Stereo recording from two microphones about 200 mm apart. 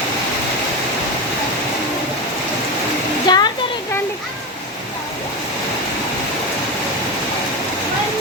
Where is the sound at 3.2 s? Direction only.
20° left (ahead or behind).